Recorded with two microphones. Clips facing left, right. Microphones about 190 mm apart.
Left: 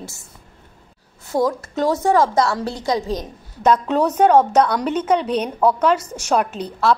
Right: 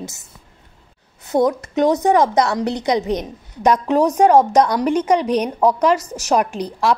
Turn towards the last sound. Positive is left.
turn(degrees=-15)  # may be behind; listen again after turning